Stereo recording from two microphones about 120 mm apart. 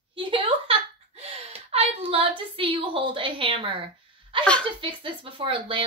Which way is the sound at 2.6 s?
45° right (ahead or behind).